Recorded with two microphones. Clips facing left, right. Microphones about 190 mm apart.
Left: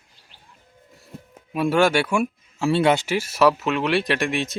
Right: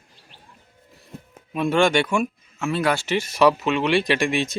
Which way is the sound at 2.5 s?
30° left (ahead or behind).